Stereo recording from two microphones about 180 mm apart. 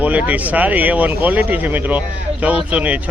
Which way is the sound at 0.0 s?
10° right (ahead or behind).